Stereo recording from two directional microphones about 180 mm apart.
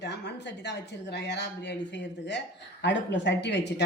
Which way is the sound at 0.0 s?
70° left (ahead or behind).